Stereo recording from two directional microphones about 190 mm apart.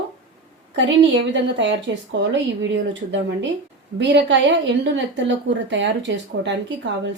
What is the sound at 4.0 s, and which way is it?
A woman's voice, 65° right (ahead or behind).